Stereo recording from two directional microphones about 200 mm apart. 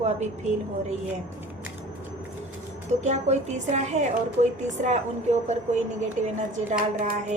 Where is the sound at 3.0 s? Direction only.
35° right (ahead or behind).